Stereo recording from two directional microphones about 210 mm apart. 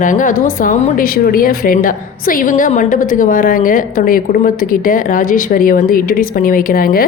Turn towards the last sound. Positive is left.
turn(degrees=45)  # may be behind; listen again after turning